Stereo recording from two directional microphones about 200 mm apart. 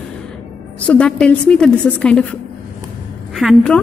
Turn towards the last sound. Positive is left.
turn(degrees=0)  # may be behind; listen again after turning